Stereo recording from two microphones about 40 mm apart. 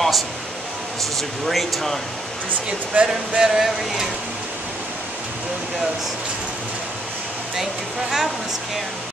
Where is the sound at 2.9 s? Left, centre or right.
Right.